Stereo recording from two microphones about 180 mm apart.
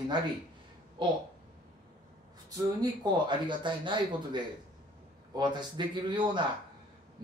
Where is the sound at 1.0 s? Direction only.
25° right (ahead or behind).